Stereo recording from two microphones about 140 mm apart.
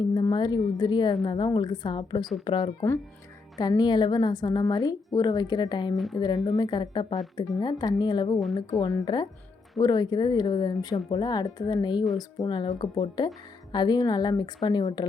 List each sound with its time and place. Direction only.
0.1 s a woman's voice: 30° left (ahead or behind)